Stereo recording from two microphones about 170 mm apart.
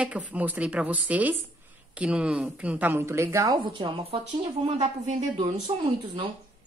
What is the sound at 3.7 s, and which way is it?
Speech, 30° right (ahead or behind).